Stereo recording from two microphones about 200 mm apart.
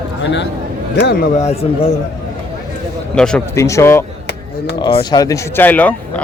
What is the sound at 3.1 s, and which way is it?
Speech, 5° left (ahead or behind).